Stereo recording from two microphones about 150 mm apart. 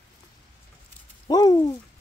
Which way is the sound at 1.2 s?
25° left (ahead or behind).